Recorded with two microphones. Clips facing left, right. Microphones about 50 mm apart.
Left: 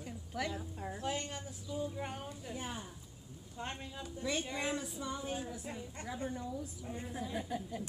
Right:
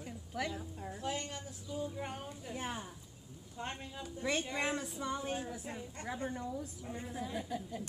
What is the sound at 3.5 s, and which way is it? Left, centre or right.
Speech, centre.